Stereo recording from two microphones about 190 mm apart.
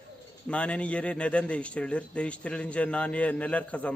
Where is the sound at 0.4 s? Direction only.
5° left (ahead or behind).